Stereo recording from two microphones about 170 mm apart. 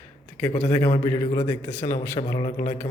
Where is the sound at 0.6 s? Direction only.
10° left (ahead or behind).